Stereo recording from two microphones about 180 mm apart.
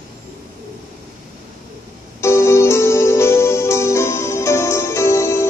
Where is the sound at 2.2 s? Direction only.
15° left (ahead or behind).